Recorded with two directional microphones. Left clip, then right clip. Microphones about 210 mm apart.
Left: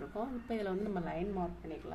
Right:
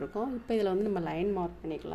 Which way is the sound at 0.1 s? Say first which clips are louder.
Right 6 dB; 30° right (ahead or behind).